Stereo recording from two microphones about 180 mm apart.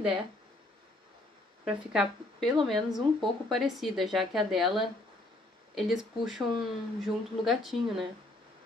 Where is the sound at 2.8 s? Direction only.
25° right (ahead or behind).